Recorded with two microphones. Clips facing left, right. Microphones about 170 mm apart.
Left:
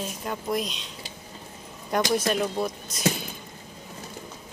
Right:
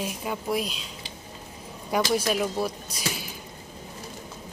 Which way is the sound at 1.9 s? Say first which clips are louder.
Even; 5° right (ahead or behind).